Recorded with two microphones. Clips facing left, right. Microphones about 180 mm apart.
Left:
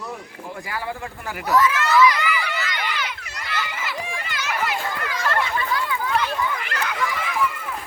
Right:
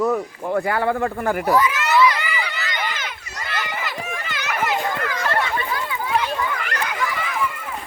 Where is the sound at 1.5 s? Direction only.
30° right (ahead or behind).